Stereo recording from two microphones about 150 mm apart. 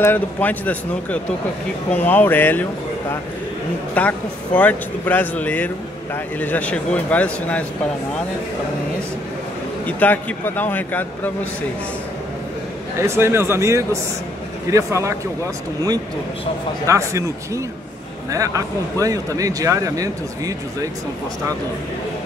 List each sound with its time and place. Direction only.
0.0 s speech: 10° left (ahead or behind)
4.0 s speech: 10° left (ahead or behind)
9.8 s speech: 10° left (ahead or behind)
13.0 s speech: 15° right (ahead or behind)
16.8 s speech: 20° right (ahead or behind)
18.9 s speech: 20° right (ahead or behind)